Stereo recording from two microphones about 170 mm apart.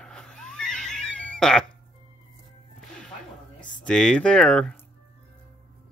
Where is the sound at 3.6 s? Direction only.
25° left (ahead or behind).